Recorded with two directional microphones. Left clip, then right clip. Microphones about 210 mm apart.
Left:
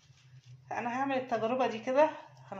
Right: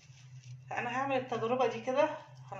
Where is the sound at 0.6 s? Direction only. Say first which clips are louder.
Left 1 dB; 20° left (ahead or behind).